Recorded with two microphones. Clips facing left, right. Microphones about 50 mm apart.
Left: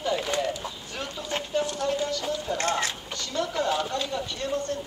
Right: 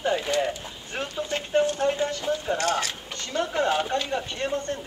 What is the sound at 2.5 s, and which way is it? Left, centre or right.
Speech, left.